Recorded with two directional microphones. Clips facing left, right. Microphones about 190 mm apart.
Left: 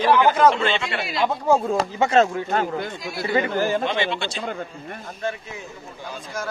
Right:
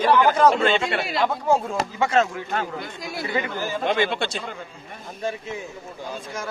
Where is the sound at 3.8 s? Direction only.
50° right (ahead or behind).